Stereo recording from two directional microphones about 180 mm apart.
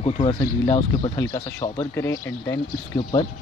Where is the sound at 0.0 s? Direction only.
30° left (ahead or behind); by 2.5 s 15° left (ahead or behind).